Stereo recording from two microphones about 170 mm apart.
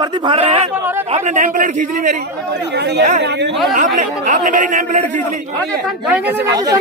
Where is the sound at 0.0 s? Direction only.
30° right (ahead or behind).